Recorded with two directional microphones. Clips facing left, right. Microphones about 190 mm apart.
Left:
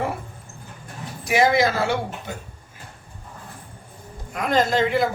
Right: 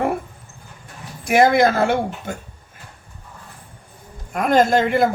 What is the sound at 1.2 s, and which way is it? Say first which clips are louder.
Speech: right 4 dB; 55° right (ahead or behind).